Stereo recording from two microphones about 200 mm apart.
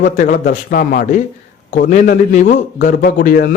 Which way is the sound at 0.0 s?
40° left (ahead or behind).